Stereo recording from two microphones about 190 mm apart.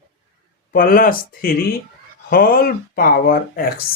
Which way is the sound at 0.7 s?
50° left (ahead or behind).